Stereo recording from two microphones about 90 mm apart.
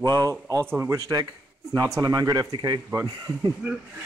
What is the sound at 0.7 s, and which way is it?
Speech, 25° right (ahead or behind).